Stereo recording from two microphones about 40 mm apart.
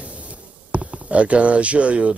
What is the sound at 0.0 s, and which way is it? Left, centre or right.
Speech, right.